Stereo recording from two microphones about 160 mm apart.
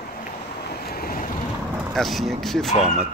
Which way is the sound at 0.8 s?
70° left (ahead or behind).